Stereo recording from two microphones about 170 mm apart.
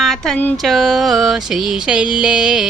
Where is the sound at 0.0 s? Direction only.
Centre (ahead or behind).